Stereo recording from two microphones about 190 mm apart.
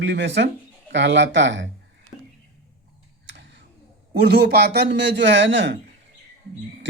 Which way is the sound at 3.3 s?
65° right (ahead or behind).